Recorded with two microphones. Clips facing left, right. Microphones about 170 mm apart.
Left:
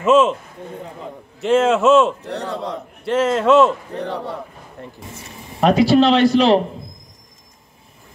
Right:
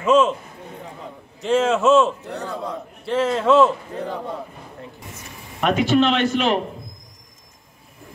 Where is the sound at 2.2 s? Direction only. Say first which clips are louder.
Left 3 dB; 70° left (ahead or behind).